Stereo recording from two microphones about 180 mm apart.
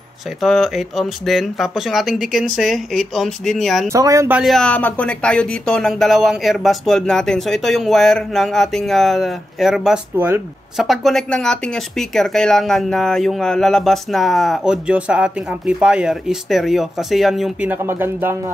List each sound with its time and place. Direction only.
0.4 s speech: centre (ahead or behind)
3.9 s speech: 15° right (ahead or behind)
4.4 s speech: centre (ahead or behind)
10.8 s speech: centre (ahead or behind)
17.6 s speech: 10° right (ahead or behind)